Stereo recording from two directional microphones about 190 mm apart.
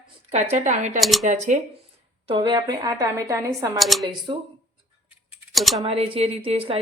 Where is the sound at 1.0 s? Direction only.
Centre (ahead or behind).